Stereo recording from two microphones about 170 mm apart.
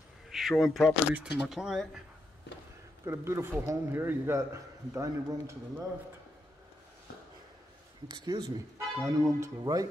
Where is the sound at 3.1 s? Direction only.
15° right (ahead or behind).